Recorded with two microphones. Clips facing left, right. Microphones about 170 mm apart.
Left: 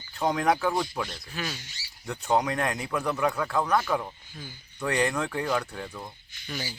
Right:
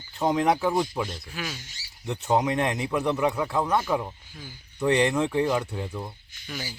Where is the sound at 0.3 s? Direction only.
20° right (ahead or behind).